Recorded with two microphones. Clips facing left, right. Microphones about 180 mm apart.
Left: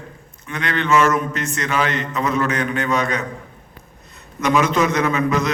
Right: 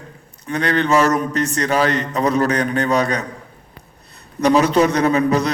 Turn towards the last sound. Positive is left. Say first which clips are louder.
# right 3 dB
turn(degrees=-35)  # may be behind; listen again after turning